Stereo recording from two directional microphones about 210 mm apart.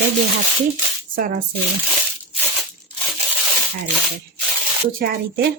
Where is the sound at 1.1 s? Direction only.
40° right (ahead or behind).